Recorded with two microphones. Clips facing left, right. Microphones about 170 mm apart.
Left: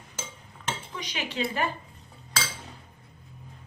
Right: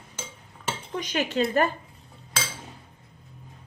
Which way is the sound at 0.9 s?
45° right (ahead or behind).